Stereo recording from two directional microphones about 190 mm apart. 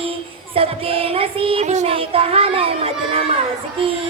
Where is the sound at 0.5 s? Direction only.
30° right (ahead or behind).